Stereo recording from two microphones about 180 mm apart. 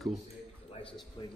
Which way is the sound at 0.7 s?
30° left (ahead or behind).